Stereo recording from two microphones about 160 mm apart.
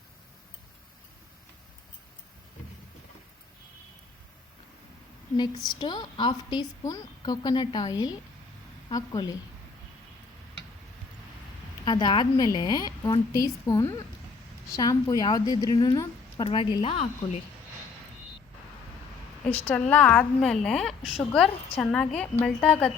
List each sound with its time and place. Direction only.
5.6 s a woman's voice: 30° left (ahead or behind)
11.9 s a woman's voice: 30° left (ahead or behind)
19.9 s a woman's voice: 10° left (ahead or behind)